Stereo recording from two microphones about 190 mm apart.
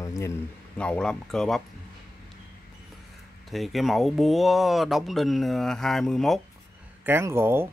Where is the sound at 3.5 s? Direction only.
Centre (ahead or behind).